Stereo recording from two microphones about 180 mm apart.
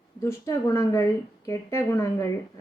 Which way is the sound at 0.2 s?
15° left (ahead or behind).